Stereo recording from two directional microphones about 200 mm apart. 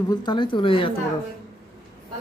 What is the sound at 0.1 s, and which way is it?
Speech, 20° left (ahead or behind).